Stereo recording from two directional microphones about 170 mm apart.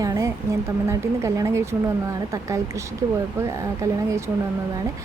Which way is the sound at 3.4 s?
20° right (ahead or behind).